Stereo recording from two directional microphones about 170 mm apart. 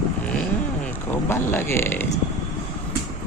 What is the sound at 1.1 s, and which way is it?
Speech, 15° left (ahead or behind).